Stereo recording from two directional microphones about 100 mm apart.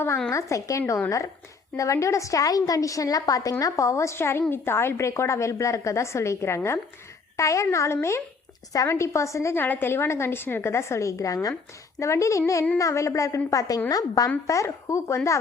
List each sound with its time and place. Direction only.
0.3 s a woman's voice: 30° left (ahead or behind)